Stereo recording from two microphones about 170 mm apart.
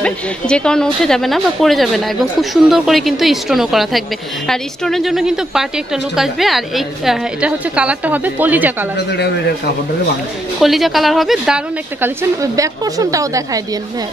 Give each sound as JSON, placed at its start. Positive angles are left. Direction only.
{"t": 0.0, "sound": "a woman's voice", "side_deg": 5}
{"t": 10.6, "sound": "a woman's voice", "side_deg": 0}
{"t": 12.4, "sound": "speech", "side_deg": -20}